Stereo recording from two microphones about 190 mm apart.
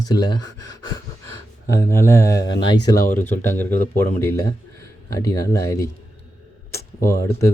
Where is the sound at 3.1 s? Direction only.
10° left (ahead or behind).